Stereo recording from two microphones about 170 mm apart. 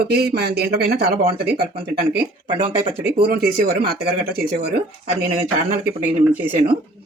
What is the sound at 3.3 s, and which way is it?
Speech, 60° right (ahead or behind).